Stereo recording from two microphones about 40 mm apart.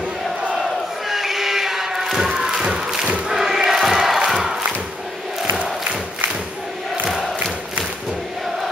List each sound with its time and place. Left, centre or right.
1.0 s crowd: centre